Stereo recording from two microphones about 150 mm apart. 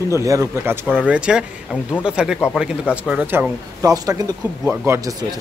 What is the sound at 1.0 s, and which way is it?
A man's voice, 10° right (ahead or behind).